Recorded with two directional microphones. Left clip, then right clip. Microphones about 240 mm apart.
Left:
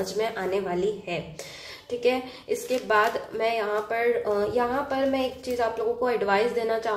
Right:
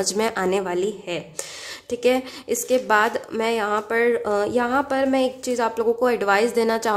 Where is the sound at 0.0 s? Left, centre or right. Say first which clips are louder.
Right 5 dB; right.